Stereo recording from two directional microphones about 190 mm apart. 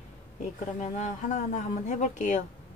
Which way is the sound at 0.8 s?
40° left (ahead or behind).